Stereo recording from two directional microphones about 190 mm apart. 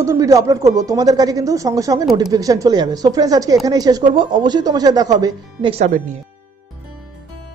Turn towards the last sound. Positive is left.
turn(degrees=-30)  # may be behind; listen again after turning